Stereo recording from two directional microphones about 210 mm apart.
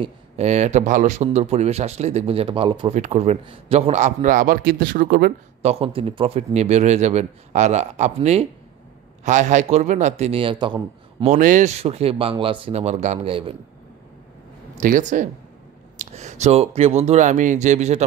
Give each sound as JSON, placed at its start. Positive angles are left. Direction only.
{"t": 0.0, "sound": "a man's voice", "side_deg": -30}
{"t": 5.6, "sound": "a man's voice", "side_deg": -30}
{"t": 11.3, "sound": "speech", "side_deg": -35}
{"t": 14.8, "sound": "a man's voice", "side_deg": -35}